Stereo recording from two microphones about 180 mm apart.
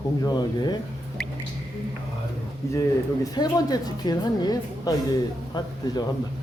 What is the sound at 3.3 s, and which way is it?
A woman's voice, 20° left (ahead or behind).